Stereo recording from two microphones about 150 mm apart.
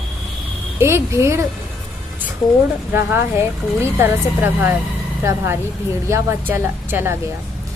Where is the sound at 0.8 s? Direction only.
20° right (ahead or behind).